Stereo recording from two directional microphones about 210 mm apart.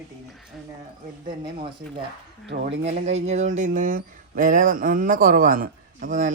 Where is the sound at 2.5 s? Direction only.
50° right (ahead or behind).